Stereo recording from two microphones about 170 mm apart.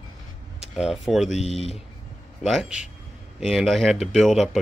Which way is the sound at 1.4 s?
35° left (ahead or behind).